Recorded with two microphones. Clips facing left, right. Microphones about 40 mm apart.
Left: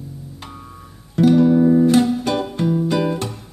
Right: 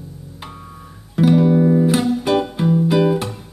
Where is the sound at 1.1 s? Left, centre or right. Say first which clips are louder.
Left 1 dB; centre.